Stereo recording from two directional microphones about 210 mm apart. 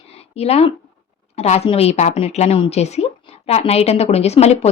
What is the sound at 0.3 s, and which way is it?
A woman's voice, 30° left (ahead or behind).